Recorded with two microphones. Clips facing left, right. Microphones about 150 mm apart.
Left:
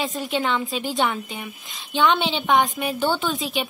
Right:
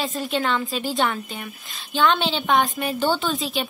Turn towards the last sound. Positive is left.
turn(degrees=15)  # may be behind; listen again after turning